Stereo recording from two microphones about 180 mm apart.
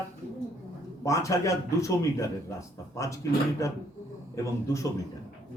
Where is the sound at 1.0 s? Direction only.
15° left (ahead or behind).